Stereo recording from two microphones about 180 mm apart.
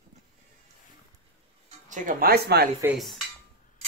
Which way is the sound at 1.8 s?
45° right (ahead or behind).